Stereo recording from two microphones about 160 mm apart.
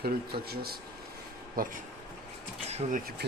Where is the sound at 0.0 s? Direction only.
75° right (ahead or behind).